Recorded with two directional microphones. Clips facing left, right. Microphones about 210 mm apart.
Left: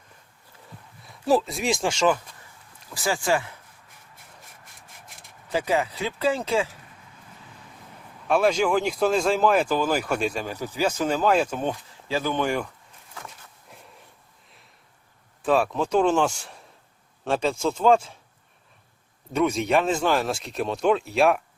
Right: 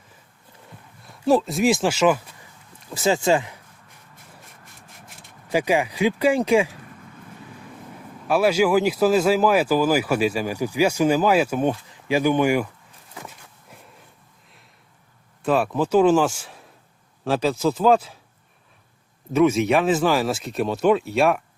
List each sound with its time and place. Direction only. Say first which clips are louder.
1.0 s speech: right 3 dB; centre (ahead or behind)
2.9 s speech: right 5 dB; 25° right (ahead or behind)
5.5 s speech: right 3 dB; 15° right (ahead or behind)
8.3 s speech: right 3 dB; 5° right (ahead or behind)
13.2 s a sound: right 2 dB; centre (ahead or behind)
15.4 s speech: right 1 dB; centre (ahead or behind)
19.3 s speech: right 4 dB; 5° right (ahead or behind)